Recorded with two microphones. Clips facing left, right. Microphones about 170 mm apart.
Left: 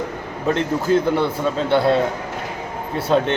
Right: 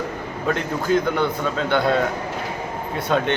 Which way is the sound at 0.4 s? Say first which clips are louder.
Left 3 dB; 30° left (ahead or behind).